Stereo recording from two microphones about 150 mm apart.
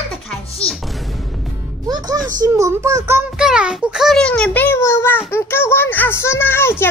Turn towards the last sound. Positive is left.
turn(degrees=15)  # may be behind; listen again after turning